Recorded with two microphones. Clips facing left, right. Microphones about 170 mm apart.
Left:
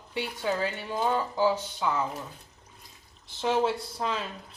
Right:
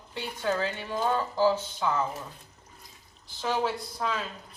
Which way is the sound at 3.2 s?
25° left (ahead or behind).